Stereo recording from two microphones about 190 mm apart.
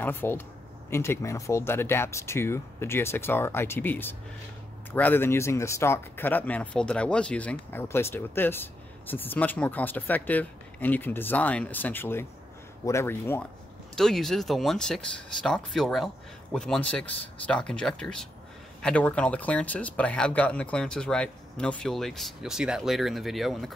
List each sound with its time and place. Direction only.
0.0 s speech: 10° left (ahead or behind)
13.9 s speech: centre (ahead or behind)